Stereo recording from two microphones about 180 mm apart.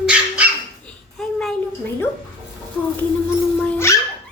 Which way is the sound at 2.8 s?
10° left (ahead or behind).